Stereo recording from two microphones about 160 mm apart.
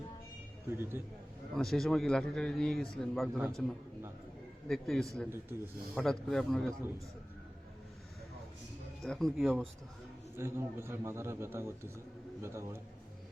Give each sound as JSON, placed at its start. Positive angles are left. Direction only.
{"t": 0.8, "sound": "a man's voice", "side_deg": -15}
{"t": 1.5, "sound": "a man's voice", "side_deg": 0}
{"t": 3.3, "sound": "a man's voice", "side_deg": -15}
{"t": 4.7, "sound": "a man's voice", "side_deg": 0}
{"t": 9.0, "sound": "a man's voice", "side_deg": 0}
{"t": 10.3, "sound": "a man's voice", "side_deg": -15}